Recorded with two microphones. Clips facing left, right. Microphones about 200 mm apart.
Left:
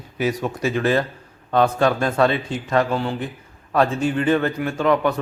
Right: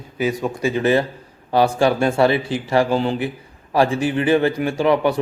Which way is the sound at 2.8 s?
25° right (ahead or behind).